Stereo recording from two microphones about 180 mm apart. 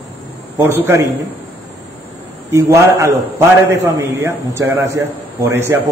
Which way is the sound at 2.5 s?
15° right (ahead or behind).